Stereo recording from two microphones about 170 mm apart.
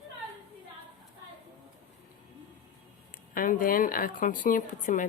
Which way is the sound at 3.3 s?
55° left (ahead or behind).